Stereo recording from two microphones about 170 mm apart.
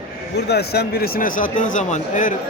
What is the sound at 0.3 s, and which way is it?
Speech, 75° left (ahead or behind).